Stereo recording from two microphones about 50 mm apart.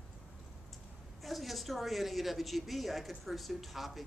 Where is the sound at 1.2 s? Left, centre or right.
Centre.